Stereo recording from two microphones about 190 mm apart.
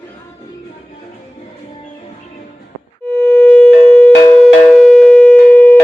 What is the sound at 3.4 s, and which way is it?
Sine wave, 5° left (ahead or behind).